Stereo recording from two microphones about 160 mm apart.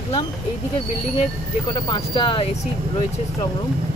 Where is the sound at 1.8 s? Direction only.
30° left (ahead or behind).